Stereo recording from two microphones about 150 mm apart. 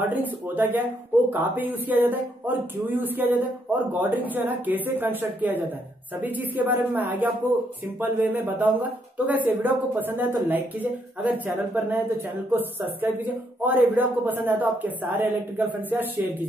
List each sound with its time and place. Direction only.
0.1 s speech: 10° right (ahead or behind)